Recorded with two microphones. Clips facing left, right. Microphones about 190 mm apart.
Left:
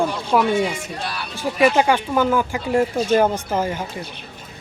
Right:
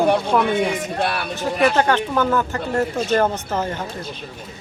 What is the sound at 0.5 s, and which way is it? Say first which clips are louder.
Speech: right 1 dB; 60° right (ahead or behind).